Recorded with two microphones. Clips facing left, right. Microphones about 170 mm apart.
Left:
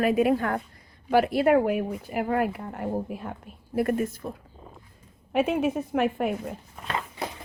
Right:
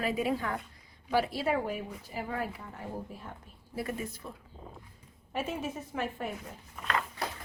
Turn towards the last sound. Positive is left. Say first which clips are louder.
# left 2 dB
turn(degrees=25)  # may be behind; listen again after turning